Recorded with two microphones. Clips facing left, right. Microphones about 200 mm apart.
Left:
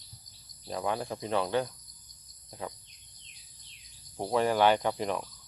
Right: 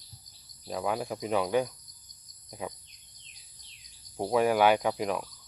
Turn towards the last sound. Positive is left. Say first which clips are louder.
# right 1 dB
turn(degrees=-5)  # may be behind; listen again after turning